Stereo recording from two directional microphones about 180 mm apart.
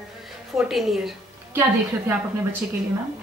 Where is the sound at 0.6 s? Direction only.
Centre (ahead or behind).